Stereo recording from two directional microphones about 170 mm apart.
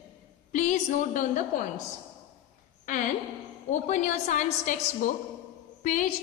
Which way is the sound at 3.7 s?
45° left (ahead or behind).